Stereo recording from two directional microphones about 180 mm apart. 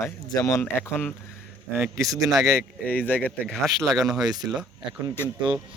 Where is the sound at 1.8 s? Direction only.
20° right (ahead or behind).